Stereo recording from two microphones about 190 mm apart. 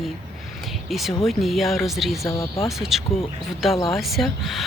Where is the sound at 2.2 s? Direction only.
15° left (ahead or behind).